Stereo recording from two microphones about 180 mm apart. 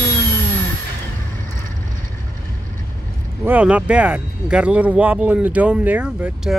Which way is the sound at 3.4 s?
10° right (ahead or behind).